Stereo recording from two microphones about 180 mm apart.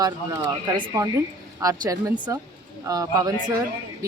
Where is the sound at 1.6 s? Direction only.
20° right (ahead or behind).